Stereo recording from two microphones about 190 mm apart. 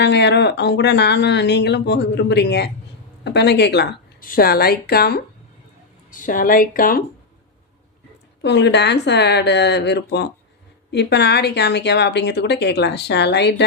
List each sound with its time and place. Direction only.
0.0 s a woman's voice: 65° left (ahead or behind)
6.1 s speech: 45° left (ahead or behind)
8.4 s a woman's voice: 65° left (ahead or behind)